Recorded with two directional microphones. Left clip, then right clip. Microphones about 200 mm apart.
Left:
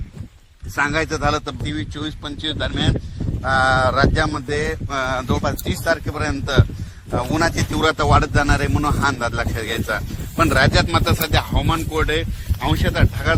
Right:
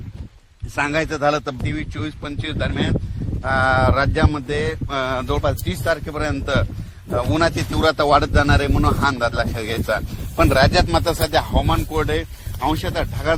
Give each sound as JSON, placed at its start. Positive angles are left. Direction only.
{"t": 0.8, "sound": "speech", "side_deg": -50}